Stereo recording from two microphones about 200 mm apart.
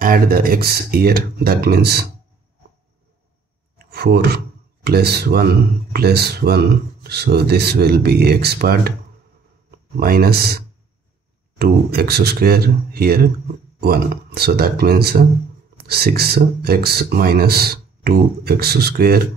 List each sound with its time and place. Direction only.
0.0 s speech: 45° right (ahead or behind)
3.7 s a sound: 55° right (ahead or behind)
4.8 s speech: 55° right (ahead or behind)